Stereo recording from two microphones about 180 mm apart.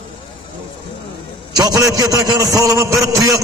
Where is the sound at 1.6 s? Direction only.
20° right (ahead or behind).